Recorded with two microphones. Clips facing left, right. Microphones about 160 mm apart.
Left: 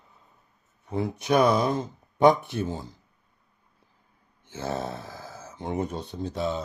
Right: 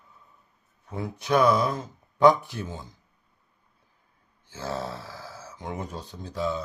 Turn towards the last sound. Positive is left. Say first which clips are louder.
# left 1 dB
turn(degrees=20)  # may be behind; listen again after turning